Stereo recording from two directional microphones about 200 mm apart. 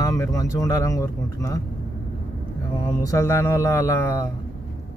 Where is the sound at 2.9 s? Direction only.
15° left (ahead or behind).